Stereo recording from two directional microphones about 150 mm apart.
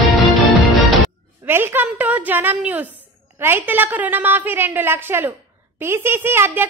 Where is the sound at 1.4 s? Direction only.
15° right (ahead or behind).